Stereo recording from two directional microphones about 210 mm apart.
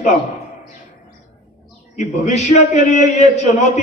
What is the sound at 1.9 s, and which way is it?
A man's voice, 30° left (ahead or behind).